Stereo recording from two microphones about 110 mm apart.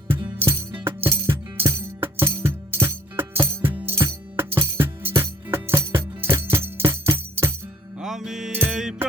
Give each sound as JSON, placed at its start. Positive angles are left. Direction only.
{"t": 0.1, "sound": "music", "side_deg": -20}
{"t": 7.9, "sound": "music", "side_deg": -5}